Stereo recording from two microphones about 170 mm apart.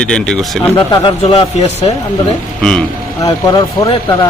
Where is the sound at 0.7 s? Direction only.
25° left (ahead or behind).